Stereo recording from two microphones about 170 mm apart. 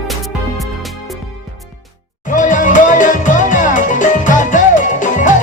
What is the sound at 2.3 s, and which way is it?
Music, 50° left (ahead or behind).